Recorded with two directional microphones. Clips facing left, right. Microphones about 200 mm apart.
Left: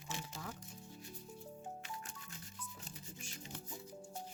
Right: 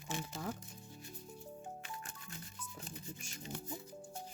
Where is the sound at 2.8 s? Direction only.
55° right (ahead or behind).